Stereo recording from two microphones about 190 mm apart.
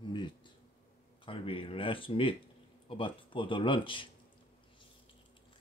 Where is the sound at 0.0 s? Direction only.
25° left (ahead or behind).